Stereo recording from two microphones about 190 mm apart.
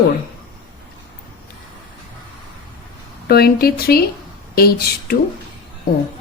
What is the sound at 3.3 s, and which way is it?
Speech, 55° left (ahead or behind).